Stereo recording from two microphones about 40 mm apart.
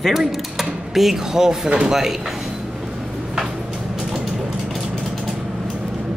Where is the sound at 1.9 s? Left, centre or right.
Centre.